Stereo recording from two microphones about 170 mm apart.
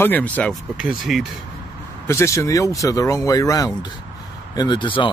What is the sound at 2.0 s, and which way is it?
Speech, 15° left (ahead or behind).